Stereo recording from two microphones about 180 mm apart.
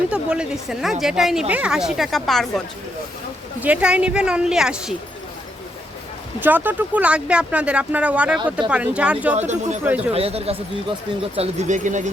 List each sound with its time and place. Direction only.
0.1 s a woman's voice: 5° right (ahead or behind)
3.6 s a woman's voice: 5° right (ahead or behind)
6.4 s speech: 10° right (ahead or behind)
9.5 s speech: 40° right (ahead or behind)